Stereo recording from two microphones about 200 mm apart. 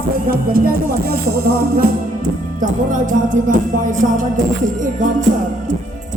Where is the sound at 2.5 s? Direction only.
40° right (ahead or behind).